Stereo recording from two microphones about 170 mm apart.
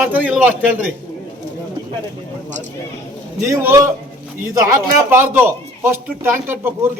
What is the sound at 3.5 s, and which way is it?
Speech, 15° right (ahead or behind).